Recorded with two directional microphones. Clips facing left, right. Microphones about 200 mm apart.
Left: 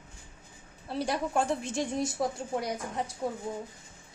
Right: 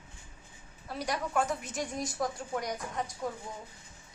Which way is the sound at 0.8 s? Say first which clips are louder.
Left 4 dB; 30° left (ahead or behind).